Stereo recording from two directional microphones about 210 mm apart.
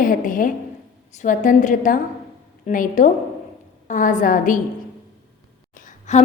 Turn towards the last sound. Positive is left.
turn(degrees=35)  # may be behind; listen again after turning